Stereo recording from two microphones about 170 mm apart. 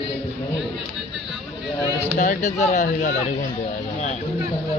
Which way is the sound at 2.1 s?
50° left (ahead or behind).